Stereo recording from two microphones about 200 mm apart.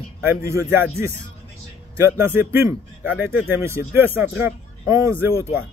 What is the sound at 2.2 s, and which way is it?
Speech, 10° right (ahead or behind).